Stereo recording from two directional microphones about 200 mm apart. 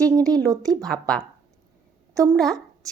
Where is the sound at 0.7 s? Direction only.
Centre (ahead or behind).